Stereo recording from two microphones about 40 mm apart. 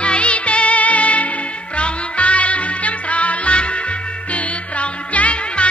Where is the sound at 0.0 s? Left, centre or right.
Left.